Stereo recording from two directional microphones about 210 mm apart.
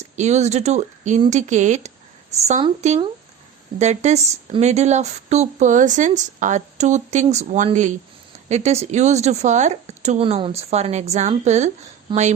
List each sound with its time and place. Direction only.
0.0 s a woman's voice: 35° right (ahead or behind)